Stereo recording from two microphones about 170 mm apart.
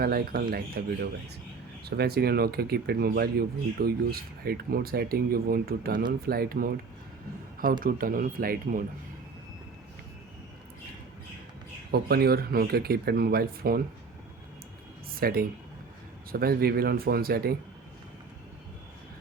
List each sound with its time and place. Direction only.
0.0 s speech: 60° right (ahead or behind)
11.9 s speech: 65° right (ahead or behind)
15.1 s speech: 60° right (ahead or behind)